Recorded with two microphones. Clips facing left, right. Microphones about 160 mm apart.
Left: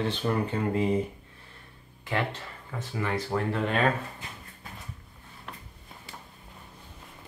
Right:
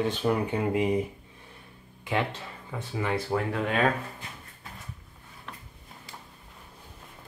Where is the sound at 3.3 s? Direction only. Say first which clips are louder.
Left 1 dB; centre (ahead or behind).